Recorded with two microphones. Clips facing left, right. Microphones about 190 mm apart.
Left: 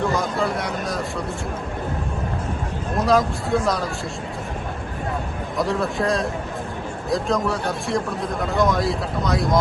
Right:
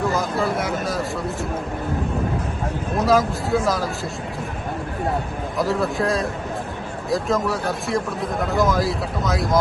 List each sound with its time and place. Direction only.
0.1 s speech: centre (ahead or behind)
3.1 s speech: centre (ahead or behind)
5.5 s speech: centre (ahead or behind)